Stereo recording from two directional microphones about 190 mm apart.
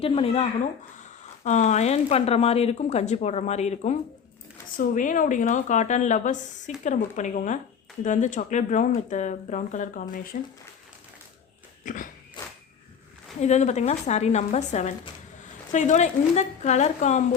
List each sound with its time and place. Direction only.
0.0 s speech: 30° left (ahead or behind)
1.5 s speech: 40° left (ahead or behind)
11.9 s biting: 45° left (ahead or behind)
13.4 s speech: 35° left (ahead or behind)